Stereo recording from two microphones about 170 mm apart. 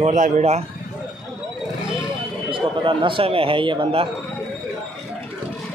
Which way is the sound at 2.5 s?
30° right (ahead or behind).